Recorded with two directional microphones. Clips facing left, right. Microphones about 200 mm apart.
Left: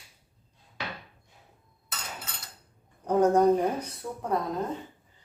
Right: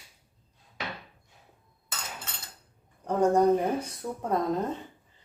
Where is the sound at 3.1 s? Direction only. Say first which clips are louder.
Left 1 dB; 5° left (ahead or behind).